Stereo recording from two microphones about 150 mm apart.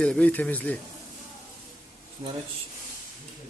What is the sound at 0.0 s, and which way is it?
Speech, 5° left (ahead or behind).